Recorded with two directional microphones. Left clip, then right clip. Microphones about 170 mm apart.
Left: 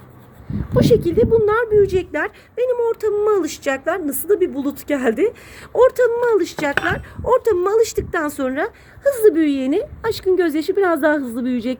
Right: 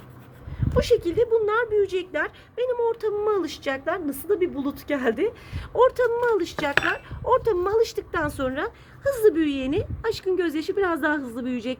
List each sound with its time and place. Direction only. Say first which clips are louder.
0.8 s a woman's voice: left 6 dB; 50° left (ahead or behind)